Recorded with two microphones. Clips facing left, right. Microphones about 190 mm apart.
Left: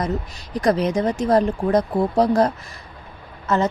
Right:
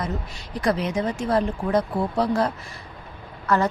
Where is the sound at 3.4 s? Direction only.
20° left (ahead or behind).